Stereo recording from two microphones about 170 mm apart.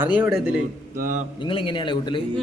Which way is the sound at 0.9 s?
50° right (ahead or behind).